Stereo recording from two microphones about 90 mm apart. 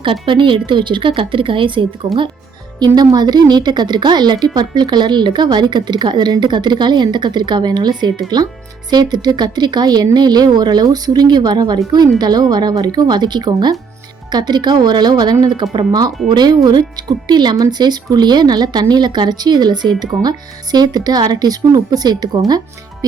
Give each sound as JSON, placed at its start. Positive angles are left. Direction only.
{"t": 0.0, "sound": "a woman's voice", "side_deg": -65}
{"t": 2.7, "sound": "speech", "side_deg": -50}